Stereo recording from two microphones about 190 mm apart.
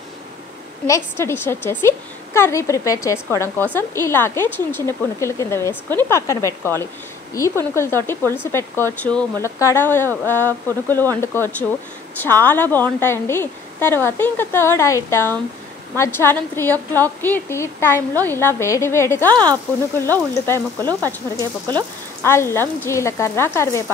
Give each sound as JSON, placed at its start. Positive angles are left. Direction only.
{"t": 0.8, "sound": "a woman's voice", "side_deg": 15}
{"t": 22.2, "sound": "a woman's voice", "side_deg": 15}